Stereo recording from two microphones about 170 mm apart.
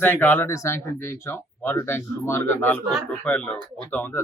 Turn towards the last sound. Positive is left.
turn(degrees=10)  # may be behind; listen again after turning